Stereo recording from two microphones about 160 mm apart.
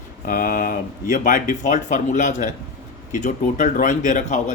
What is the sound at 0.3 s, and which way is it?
Speech, 60° left (ahead or behind).